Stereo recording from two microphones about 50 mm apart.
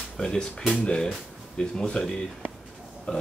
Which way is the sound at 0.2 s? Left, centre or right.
Centre.